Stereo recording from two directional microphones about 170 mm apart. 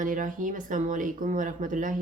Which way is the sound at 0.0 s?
50° right (ahead or behind).